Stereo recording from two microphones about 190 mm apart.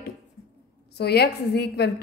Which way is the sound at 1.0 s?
60° left (ahead or behind).